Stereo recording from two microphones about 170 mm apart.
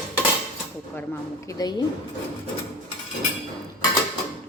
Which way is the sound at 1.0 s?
20° left (ahead or behind).